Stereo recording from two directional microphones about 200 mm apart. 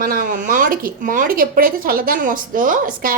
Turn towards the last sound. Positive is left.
turn(degrees=-45)  # may be behind; listen again after turning